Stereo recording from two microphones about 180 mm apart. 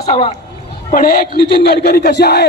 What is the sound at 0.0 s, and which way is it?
Speech, 35° left (ahead or behind).